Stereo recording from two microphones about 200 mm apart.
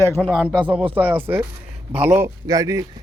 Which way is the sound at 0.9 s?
10° right (ahead or behind).